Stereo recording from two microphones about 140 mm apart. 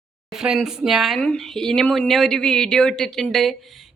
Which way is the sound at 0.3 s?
5° right (ahead or behind).